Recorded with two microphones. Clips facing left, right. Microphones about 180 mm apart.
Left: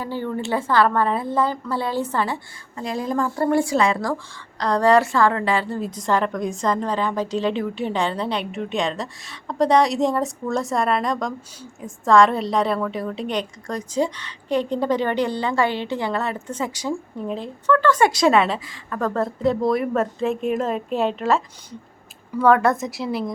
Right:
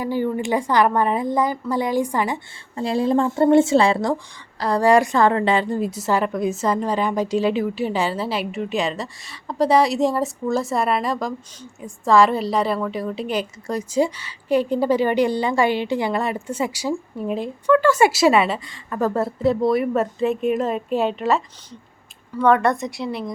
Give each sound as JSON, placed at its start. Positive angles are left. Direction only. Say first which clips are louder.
{"t": 0.0, "sound": "a woman's voice", "louder": "right 4 dB", "side_deg": -15}
{"t": 2.7, "sound": "speech", "louder": "right 5 dB", "side_deg": -30}
{"t": 4.6, "sound": "a woman's voice", "louder": "right 1 dB", "side_deg": -10}